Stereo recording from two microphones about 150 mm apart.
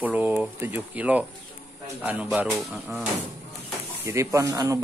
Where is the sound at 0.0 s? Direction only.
10° right (ahead or behind).